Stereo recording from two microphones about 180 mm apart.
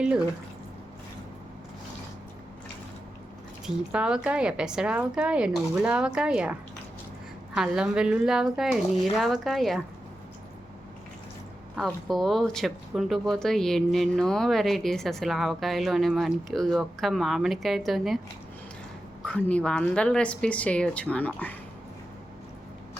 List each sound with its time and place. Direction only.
3.9 s speech: 5° right (ahead or behind)
12.0 s speech: centre (ahead or behind)
19.2 s a woman's voice: 5° left (ahead or behind)